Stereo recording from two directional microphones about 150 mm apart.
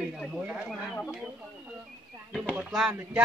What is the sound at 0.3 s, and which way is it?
Speech, 5° right (ahead or behind).